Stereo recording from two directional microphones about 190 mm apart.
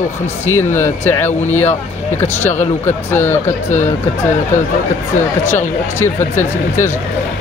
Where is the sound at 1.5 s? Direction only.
35° left (ahead or behind).